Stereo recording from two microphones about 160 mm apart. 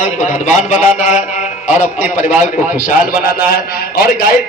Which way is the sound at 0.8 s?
45° left (ahead or behind).